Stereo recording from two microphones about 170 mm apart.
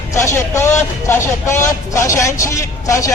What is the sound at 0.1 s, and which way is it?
Speech, 15° left (ahead or behind).